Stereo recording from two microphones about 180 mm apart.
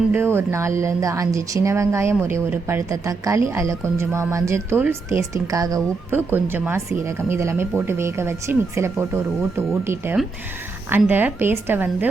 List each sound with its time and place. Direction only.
0.1 s a woman's voice: 15° right (ahead or behind)